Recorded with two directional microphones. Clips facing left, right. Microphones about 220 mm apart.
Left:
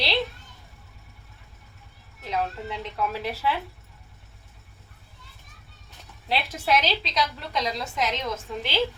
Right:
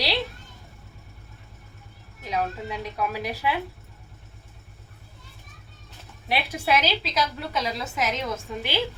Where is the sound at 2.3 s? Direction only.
15° right (ahead or behind).